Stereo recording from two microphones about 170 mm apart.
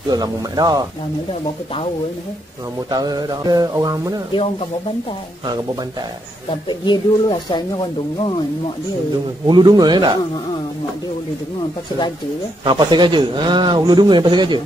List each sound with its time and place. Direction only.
0.1 s a man's voice: 25° right (ahead or behind)
2.9 s a man's voice: 25° right (ahead or behind)
6.7 s speech: 25° left (ahead or behind)
9.5 s a man's voice: 25° right (ahead or behind)
12.6 s a man's voice: 25° right (ahead or behind)